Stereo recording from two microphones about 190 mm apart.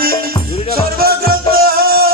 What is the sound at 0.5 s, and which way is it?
Music, 30° left (ahead or behind).